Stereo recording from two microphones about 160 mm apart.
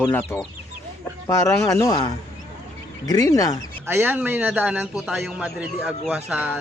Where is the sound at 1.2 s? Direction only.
20° left (ahead or behind).